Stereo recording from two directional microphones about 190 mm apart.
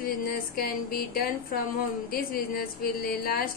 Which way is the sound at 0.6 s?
50° left (ahead or behind).